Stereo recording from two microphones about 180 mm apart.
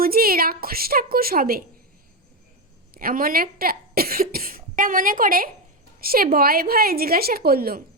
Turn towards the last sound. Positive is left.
turn(degrees=-55)  # may be behind; listen again after turning